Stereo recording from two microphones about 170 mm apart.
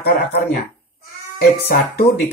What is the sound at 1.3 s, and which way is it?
Speech, 60° left (ahead or behind).